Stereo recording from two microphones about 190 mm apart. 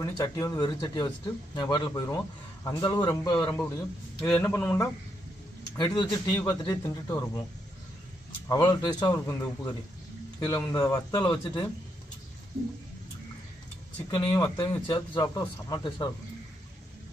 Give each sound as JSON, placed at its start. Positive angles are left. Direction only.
{"t": 0.0, "sound": "speech", "side_deg": 15}
{"t": 3.4, "sound": "a man's voice", "side_deg": 10}
{"t": 8.5, "sound": "speech", "side_deg": 20}
{"t": 14.1, "sound": "speech", "side_deg": 20}